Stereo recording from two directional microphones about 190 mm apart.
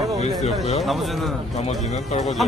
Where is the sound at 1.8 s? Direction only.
35° left (ahead or behind).